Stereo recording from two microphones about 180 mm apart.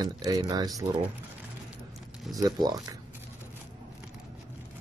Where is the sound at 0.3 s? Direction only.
20° right (ahead or behind).